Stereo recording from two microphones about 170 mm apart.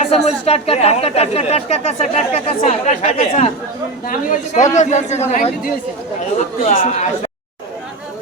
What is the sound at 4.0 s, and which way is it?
Speech, 55° left (ahead or behind).